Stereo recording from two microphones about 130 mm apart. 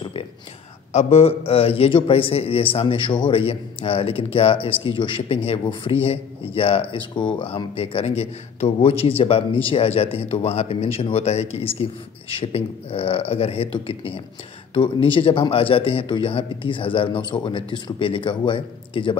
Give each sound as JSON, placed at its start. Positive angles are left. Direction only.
{"t": 0.9, "sound": "a man's voice", "side_deg": 50}